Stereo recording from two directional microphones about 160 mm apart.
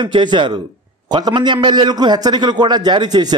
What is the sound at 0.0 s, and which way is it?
A man's voice, 30° right (ahead or behind).